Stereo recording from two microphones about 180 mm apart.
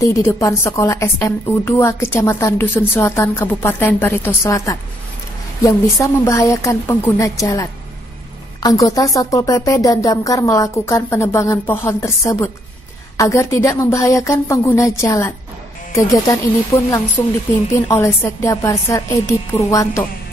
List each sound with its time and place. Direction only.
0.1 s a woman's voice: 15° left (ahead or behind)
8.6 s a woman's voice: 20° left (ahead or behind)